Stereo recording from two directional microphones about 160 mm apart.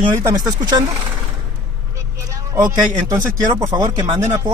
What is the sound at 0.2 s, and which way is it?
Speech, 20° right (ahead or behind).